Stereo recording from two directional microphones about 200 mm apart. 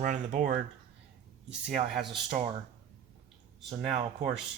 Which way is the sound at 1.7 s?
35° right (ahead or behind).